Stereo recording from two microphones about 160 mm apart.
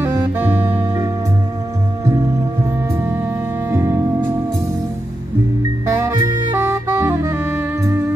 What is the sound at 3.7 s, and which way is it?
Music, 15° right (ahead or behind).